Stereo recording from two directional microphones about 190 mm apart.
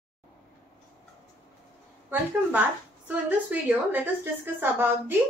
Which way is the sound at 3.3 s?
10° right (ahead or behind).